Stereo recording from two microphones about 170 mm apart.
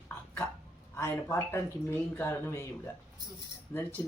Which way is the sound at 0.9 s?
15° left (ahead or behind).